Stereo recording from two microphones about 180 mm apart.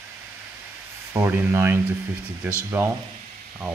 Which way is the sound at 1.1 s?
10° right (ahead or behind).